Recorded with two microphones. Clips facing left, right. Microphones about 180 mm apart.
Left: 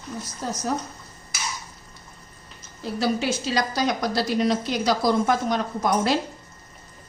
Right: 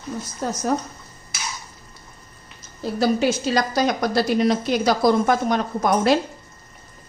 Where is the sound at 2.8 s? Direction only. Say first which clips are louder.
Right 5 dB; 45° right (ahead or behind).